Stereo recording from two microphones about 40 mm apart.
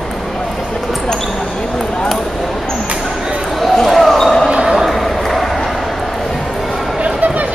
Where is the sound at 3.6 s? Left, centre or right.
Centre.